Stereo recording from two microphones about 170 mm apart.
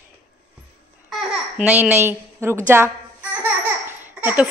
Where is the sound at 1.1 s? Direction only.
5° right (ahead or behind).